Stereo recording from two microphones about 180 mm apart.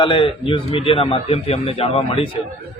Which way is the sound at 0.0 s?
30° left (ahead or behind).